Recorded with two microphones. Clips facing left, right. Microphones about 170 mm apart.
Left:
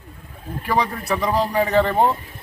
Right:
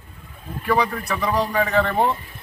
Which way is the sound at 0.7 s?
30° left (ahead or behind).